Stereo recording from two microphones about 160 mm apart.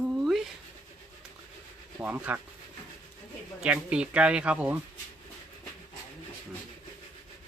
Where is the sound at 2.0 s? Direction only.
10° right (ahead or behind).